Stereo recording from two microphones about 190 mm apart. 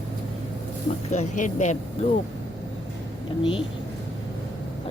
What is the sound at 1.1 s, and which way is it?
Speech, 40° left (ahead or behind).